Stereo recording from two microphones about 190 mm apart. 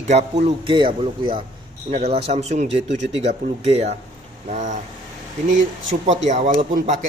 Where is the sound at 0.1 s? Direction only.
35° right (ahead or behind).